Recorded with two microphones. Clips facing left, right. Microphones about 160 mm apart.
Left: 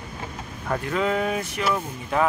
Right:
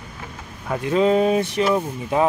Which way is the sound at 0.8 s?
25° right (ahead or behind).